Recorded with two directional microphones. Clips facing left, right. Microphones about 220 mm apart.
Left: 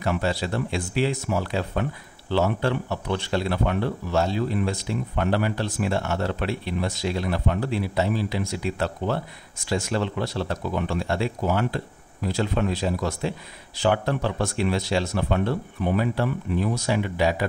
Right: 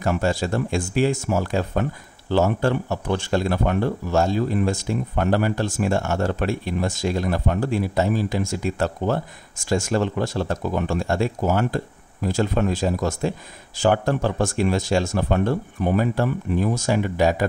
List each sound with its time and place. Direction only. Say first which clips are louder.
0.0 s speech: right 3 dB; 45° right (ahead or behind)